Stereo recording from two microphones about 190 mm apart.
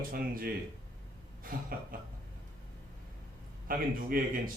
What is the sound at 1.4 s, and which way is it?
Speech, 50° right (ahead or behind).